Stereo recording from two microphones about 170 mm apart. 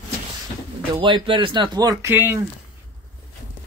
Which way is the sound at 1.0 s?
30° right (ahead or behind).